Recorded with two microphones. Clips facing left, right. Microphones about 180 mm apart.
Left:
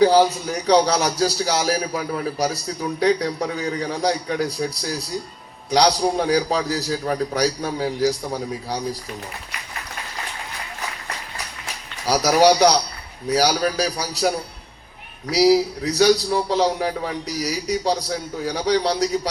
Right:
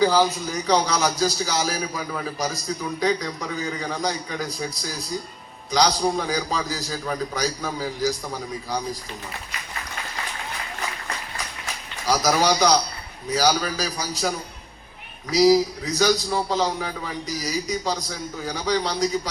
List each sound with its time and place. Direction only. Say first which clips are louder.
0.4 s a man's voice: left 5 dB; 65° left (ahead or behind)
12.1 s a man's voice: left 5 dB; 65° left (ahead or behind)